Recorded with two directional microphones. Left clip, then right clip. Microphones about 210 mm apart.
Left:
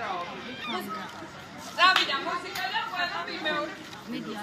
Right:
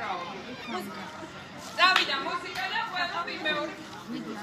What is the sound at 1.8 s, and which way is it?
Speech, 15° right (ahead or behind).